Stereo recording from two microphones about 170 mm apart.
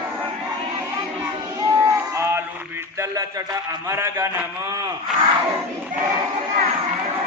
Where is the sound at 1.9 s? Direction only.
15° right (ahead or behind).